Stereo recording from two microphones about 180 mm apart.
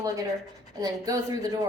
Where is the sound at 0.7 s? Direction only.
20° right (ahead or behind).